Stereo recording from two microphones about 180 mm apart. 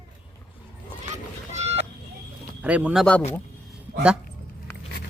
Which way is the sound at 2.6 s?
5° right (ahead or behind).